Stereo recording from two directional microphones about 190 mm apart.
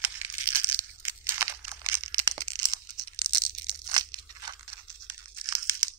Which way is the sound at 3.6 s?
20° right (ahead or behind).